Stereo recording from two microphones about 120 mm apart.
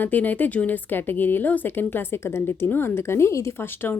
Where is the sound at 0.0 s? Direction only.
15° left (ahead or behind).